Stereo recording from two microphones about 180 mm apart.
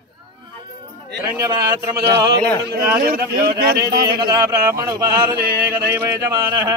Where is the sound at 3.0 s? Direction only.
55° right (ahead or behind).